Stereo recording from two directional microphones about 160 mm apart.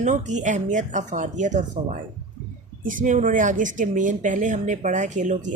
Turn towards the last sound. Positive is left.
turn(degrees=-50)  # may be behind; listen again after turning